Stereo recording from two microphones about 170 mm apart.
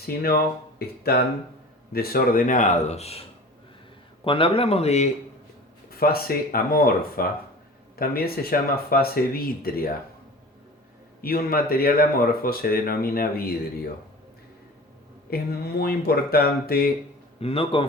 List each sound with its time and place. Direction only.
0.0 s a man's voice: 65° left (ahead or behind); by 5.1 s 40° left (ahead or behind)
5.9 s speech: 60° left (ahead or behind)
11.2 s speech: 60° left (ahead or behind)
15.3 s speech: 65° left (ahead or behind)
17.4 s a man's voice: 35° left (ahead or behind)